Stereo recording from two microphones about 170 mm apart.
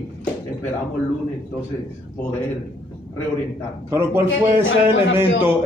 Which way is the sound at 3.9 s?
15° right (ahead or behind).